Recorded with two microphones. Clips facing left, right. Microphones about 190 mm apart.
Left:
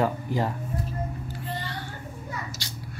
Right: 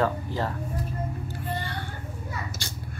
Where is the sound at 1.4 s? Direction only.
50° right (ahead or behind).